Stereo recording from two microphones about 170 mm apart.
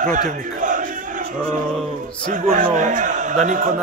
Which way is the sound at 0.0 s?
50° right (ahead or behind).